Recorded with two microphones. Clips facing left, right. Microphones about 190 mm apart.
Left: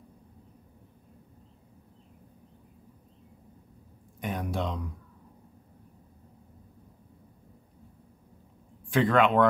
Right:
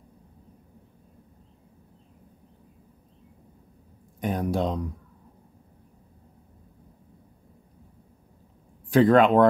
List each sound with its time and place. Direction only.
4.2 s speech: 35° right (ahead or behind)
8.9 s speech: 40° right (ahead or behind)